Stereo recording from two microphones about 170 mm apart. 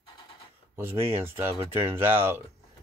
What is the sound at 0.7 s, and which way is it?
Speech, 15° right (ahead or behind).